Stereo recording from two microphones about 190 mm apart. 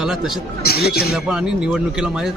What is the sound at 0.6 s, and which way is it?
Speech, 55° left (ahead or behind).